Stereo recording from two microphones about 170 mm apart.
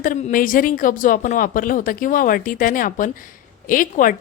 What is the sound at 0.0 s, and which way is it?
A woman's voice, 50° left (ahead or behind).